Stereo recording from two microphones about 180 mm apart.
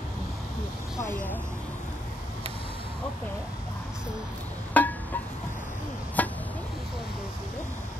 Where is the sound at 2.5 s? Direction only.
30° left (ahead or behind).